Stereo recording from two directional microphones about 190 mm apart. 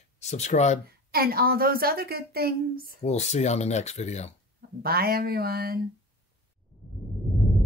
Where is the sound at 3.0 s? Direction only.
35° left (ahead or behind).